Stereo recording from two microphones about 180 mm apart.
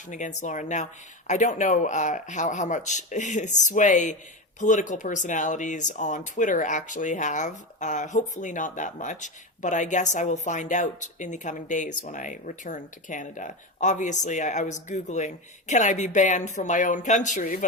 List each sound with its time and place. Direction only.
0.1 s speech: 40° left (ahead or behind)